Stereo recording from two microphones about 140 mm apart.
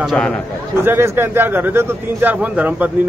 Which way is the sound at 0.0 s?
Centre (ahead or behind).